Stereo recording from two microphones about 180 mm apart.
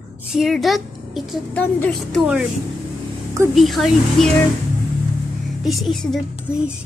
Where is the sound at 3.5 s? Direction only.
Centre (ahead or behind).